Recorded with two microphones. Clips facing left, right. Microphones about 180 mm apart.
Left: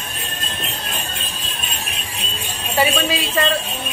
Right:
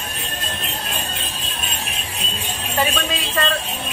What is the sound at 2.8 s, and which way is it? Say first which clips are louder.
Speech: left 4 dB; 5° left (ahead or behind).